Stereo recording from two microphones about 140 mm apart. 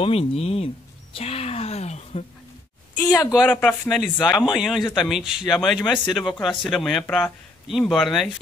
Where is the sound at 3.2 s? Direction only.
25° left (ahead or behind).